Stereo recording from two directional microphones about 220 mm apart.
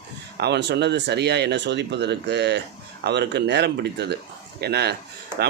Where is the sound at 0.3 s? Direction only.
50° right (ahead or behind).